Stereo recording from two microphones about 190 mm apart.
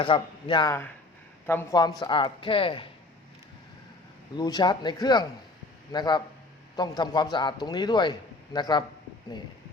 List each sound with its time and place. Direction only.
0.0 s a woman's voice: 25° left (ahead or behind)
4.4 s a woman's voice: 20° left (ahead or behind)